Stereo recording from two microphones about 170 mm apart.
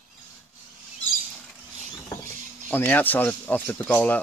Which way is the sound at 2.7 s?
10° left (ahead or behind).